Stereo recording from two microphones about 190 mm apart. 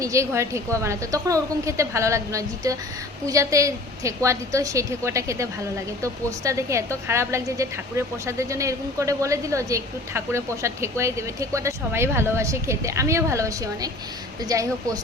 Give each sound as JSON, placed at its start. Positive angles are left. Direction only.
{"t": 0.0, "sound": "a woman's voice", "side_deg": -15}